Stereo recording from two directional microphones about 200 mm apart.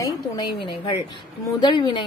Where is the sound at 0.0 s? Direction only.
20° left (ahead or behind).